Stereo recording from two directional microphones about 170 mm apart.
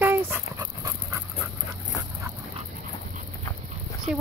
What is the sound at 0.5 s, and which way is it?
Dog, 20° right (ahead or behind).